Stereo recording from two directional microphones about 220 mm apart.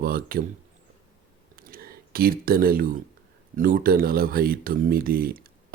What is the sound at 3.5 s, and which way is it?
Speech, 40° right (ahead or behind).